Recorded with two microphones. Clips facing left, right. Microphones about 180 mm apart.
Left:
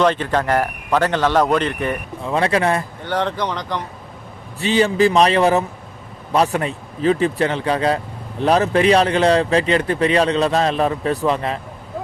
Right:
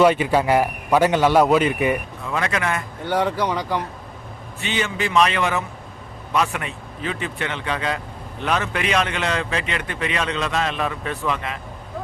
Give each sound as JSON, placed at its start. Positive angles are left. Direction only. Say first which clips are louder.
{"t": 0.0, "sound": "a man's voice", "louder": "right 1 dB", "side_deg": -10}
{"t": 2.2, "sound": "speech", "louder": "left 8 dB", "side_deg": 30}
{"t": 3.0, "sound": "a man's voice", "louder": "even", "side_deg": -10}
{"t": 4.6, "sound": "speech", "louder": "left 10 dB", "side_deg": 35}